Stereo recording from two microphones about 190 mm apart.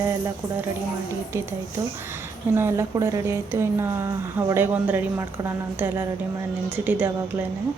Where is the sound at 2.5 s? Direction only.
15° right (ahead or behind).